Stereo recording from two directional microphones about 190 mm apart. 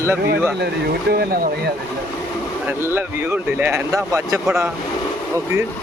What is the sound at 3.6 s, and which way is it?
Speech, 10° right (ahead or behind).